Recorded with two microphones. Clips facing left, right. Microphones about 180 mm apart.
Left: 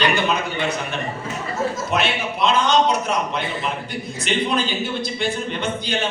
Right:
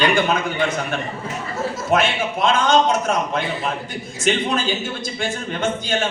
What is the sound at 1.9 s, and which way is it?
A man's voice, 50° right (ahead or behind).